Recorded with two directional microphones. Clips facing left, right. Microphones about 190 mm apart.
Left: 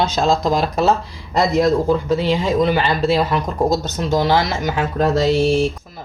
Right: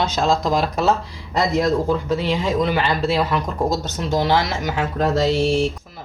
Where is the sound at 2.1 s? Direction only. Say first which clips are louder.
Left 3 dB; 30° left (ahead or behind).